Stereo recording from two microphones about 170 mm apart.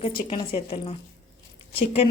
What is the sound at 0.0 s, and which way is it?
A woman's voice, 30° left (ahead or behind).